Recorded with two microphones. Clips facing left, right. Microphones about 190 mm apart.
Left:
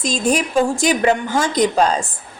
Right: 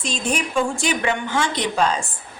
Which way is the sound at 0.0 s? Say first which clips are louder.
Left 6 dB; 40° left (ahead or behind).